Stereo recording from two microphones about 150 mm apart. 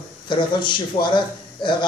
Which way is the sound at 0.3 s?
30° left (ahead or behind).